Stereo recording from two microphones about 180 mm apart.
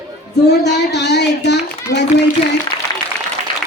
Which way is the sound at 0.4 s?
70° left (ahead or behind).